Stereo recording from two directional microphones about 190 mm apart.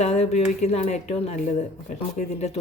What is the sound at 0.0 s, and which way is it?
Speech, 35° left (ahead or behind).